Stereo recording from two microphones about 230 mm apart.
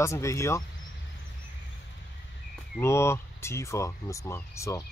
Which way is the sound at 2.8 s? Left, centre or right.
Centre.